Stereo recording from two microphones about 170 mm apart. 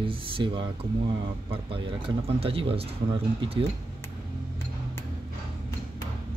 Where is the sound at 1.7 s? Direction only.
35° right (ahead or behind).